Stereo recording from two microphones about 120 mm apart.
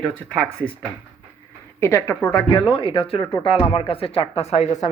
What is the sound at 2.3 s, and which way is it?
Speech, 40° left (ahead or behind).